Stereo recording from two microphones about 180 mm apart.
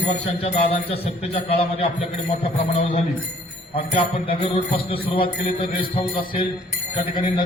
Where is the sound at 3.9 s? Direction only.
30° left (ahead or behind).